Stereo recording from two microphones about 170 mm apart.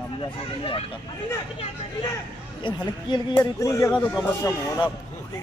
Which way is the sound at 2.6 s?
25° left (ahead or behind).